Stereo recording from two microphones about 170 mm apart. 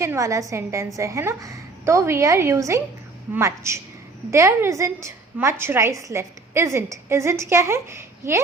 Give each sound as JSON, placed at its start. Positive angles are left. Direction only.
{"t": 0.0, "sound": "a woman's voice", "side_deg": -15}